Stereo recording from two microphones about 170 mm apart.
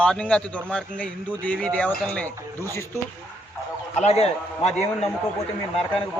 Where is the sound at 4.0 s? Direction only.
40° left (ahead or behind).